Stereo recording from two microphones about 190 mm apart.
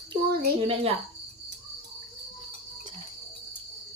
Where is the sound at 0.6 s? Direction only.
30° right (ahead or behind).